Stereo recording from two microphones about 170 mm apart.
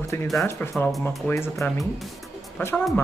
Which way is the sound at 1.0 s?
15° left (ahead or behind).